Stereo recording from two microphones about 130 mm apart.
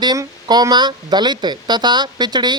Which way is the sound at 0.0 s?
30° right (ahead or behind).